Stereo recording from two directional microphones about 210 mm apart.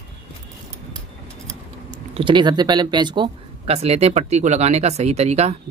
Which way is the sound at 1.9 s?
25° right (ahead or behind).